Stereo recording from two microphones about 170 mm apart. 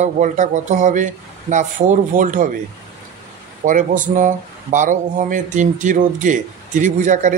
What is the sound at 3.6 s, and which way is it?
Speech, 50° right (ahead or behind).